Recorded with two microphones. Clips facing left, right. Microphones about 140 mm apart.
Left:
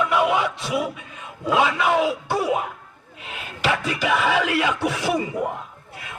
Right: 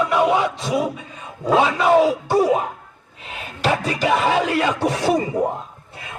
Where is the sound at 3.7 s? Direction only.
40° right (ahead or behind).